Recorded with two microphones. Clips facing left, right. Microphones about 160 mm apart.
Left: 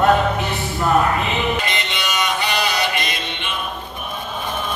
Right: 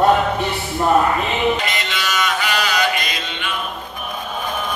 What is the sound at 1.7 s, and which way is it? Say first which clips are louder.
Music: right 1 dB; 25° left (ahead or behind).